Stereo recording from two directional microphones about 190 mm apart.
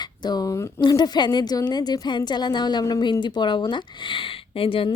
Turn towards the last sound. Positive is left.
turn(degrees=30)  # may be behind; listen again after turning